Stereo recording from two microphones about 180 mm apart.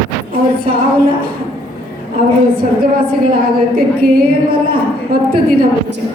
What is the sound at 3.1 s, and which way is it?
A woman's voice, 55° right (ahead or behind).